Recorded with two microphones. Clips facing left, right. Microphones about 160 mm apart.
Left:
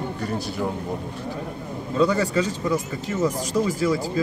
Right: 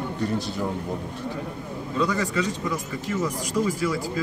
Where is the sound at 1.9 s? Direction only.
30° left (ahead or behind).